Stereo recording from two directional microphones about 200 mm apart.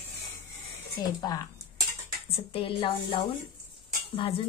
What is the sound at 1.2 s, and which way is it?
Speech, 20° left (ahead or behind).